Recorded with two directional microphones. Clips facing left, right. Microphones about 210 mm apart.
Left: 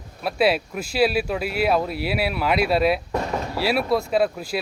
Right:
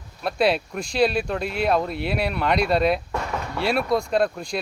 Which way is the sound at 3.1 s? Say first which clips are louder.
Left 3 dB; 30° left (ahead or behind).